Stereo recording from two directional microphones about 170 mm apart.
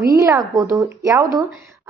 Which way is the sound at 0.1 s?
20° right (ahead or behind).